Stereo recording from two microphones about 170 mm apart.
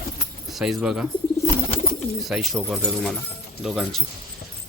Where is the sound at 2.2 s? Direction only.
Centre (ahead or behind).